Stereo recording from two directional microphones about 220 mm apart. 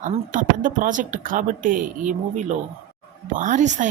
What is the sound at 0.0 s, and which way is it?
Speech, 35° right (ahead or behind).